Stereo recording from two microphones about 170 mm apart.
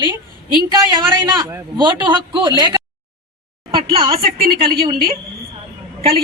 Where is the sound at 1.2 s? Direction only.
20° right (ahead or behind).